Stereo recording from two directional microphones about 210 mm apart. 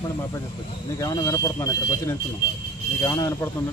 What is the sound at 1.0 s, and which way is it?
Speech, 15° left (ahead or behind).